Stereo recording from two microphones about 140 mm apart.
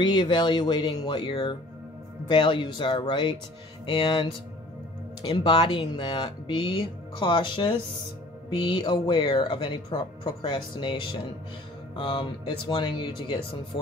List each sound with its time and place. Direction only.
0.0 s speech: 30° left (ahead or behind)